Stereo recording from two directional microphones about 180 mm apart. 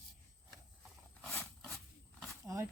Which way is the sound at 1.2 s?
5° left (ahead or behind).